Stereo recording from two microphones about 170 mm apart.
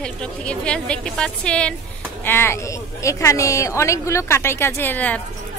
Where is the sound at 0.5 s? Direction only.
5° left (ahead or behind).